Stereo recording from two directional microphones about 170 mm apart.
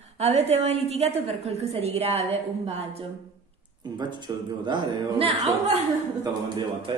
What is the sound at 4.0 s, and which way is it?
Speech, 25° right (ahead or behind).